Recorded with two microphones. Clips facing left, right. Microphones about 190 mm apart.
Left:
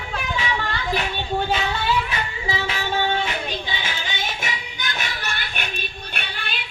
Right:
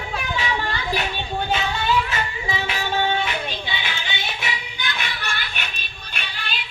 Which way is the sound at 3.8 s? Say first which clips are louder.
Left 1 dB; 45° left (ahead or behind).